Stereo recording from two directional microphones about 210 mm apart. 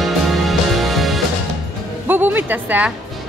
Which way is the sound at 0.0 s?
Centre (ahead or behind).